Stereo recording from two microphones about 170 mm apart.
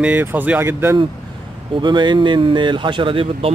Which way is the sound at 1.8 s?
25° right (ahead or behind).